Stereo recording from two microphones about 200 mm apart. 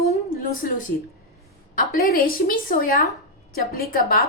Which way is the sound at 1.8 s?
45° left (ahead or behind).